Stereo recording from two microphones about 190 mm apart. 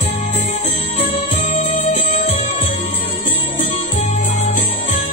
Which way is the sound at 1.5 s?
40° left (ahead or behind).